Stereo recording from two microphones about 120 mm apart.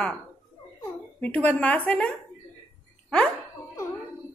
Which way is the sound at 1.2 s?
10° left (ahead or behind).